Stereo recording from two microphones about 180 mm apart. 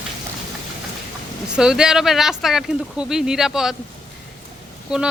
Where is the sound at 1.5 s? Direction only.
5° right (ahead or behind).